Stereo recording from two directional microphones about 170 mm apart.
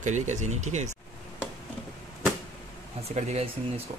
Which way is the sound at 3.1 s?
40° right (ahead or behind).